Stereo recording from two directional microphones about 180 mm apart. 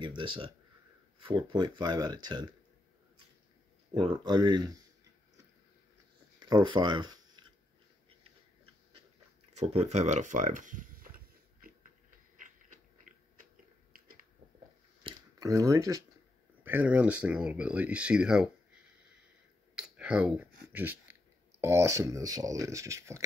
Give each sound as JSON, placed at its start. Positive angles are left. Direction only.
{"t": 0.0, "sound": "speech", "side_deg": -25}
{"t": 3.9, "sound": "speech", "side_deg": -25}
{"t": 6.4, "sound": "speech", "side_deg": -25}
{"t": 9.6, "sound": "speech", "side_deg": -35}
{"t": 12.4, "sound": "a sound", "side_deg": -45}
{"t": 15.0, "sound": "a sound", "side_deg": -20}
{"t": 16.6, "sound": "speech", "side_deg": -10}
{"t": 19.7, "sound": "speech", "side_deg": -5}